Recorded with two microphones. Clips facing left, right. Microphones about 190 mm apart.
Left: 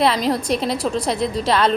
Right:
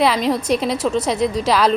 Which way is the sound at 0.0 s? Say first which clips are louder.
Right 1 dB; centre (ahead or behind).